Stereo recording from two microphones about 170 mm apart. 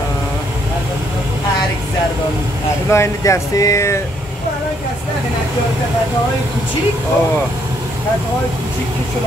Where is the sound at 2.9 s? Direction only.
15° left (ahead or behind).